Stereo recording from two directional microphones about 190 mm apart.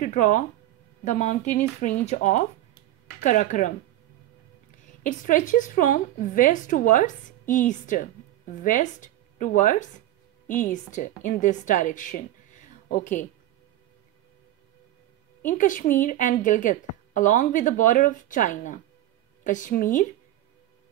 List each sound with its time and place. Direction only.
0.0 s a woman's voice: 45° left (ahead or behind)
5.0 s a woman's voice: 45° left (ahead or behind)
15.4 s a woman's voice: 45° left (ahead or behind)